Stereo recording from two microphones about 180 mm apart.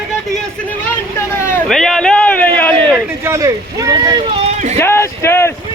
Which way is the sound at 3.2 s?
15° right (ahead or behind).